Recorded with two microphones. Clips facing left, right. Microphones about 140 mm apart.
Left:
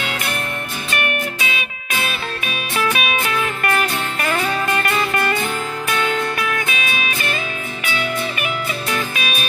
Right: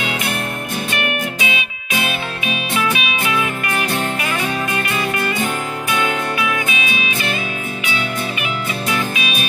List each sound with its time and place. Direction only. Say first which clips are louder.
1.4 s music: right 2 dB; 50° left (ahead or behind)